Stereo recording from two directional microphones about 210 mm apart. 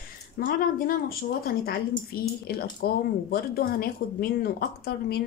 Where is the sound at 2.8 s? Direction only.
45° left (ahead or behind).